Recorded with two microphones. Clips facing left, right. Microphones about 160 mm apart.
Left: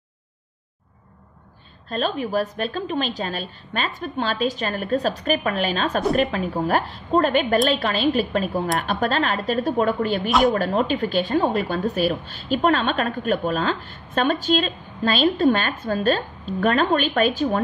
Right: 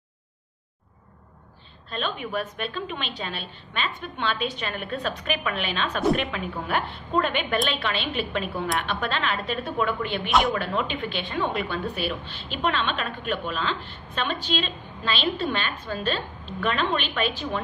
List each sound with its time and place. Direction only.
1.9 s a woman's voice: 40° left (ahead or behind)